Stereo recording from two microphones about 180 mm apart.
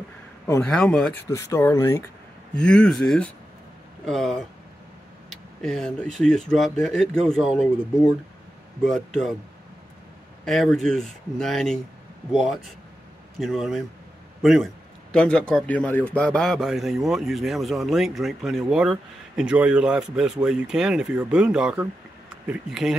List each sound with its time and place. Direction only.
0.6 s a man's voice: 5° left (ahead or behind)
1.3 s speech: 15° left (ahead or behind)
2.5 s a man's voice: 5° left (ahead or behind)
8.8 s a man's voice: centre (ahead or behind)
10.4 s a man's voice: centre (ahead or behind)